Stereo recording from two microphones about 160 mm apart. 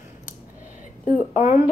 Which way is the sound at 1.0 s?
50° left (ahead or behind).